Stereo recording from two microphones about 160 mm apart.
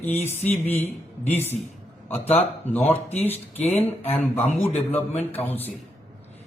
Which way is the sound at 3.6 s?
10° left (ahead or behind).